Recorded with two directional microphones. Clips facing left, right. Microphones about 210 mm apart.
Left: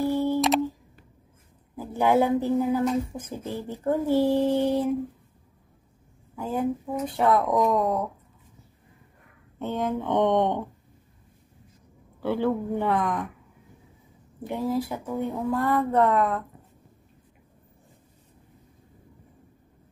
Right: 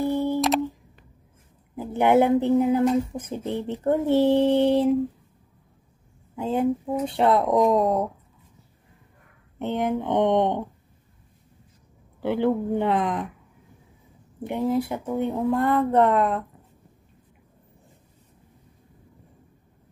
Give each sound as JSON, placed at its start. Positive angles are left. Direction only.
{"t": 0.0, "sound": "a sound", "side_deg": -15}
{"t": 0.4, "sound": "a sound", "side_deg": 0}
{"t": 1.8, "sound": "speech", "side_deg": -20}
{"t": 6.3, "sound": "speech", "side_deg": -25}
{"t": 9.6, "sound": "speech", "side_deg": -20}
{"t": 12.2, "sound": "speech", "side_deg": -20}
{"t": 14.4, "sound": "speech", "side_deg": -20}